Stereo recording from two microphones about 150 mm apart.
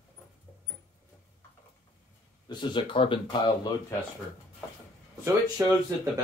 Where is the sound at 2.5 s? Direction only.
30° left (ahead or behind).